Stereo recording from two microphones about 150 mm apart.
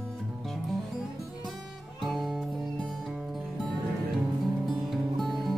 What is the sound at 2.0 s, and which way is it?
Music, centre (ahead or behind).